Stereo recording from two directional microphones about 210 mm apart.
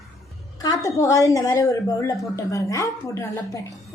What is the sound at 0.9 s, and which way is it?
A woman's voice, 15° left (ahead or behind).